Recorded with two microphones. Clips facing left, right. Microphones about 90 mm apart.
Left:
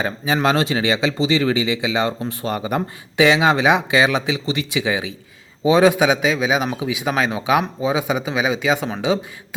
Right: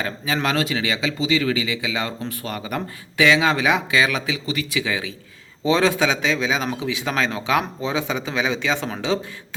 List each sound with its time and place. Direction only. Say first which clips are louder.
0.4 s a man's voice: left 5 dB; 30° left (ahead or behind); by 9.6 s 10° left (ahead or behind)